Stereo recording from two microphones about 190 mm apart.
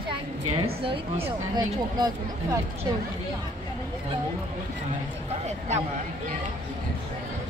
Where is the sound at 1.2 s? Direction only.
20° right (ahead or behind).